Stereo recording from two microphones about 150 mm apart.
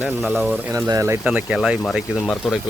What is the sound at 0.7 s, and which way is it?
Speech, 20° right (ahead or behind).